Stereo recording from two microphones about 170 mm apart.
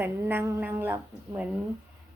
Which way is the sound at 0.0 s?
10° right (ahead or behind).